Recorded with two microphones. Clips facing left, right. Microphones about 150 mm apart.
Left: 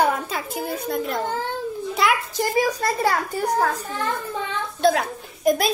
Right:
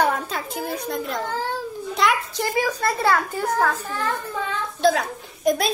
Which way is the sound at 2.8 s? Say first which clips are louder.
Right 1 dB; 40° left (ahead or behind).